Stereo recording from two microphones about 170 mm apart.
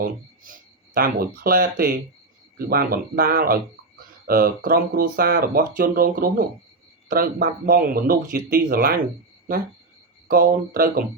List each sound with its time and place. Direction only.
0.4 s speech: 55° right (ahead or behind)
10.2 s speech: 60° right (ahead or behind)